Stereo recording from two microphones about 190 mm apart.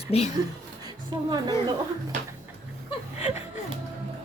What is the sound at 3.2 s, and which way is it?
Chuckle, 35° left (ahead or behind).